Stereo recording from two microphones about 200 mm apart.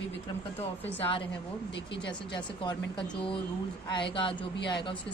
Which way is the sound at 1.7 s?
60° left (ahead or behind).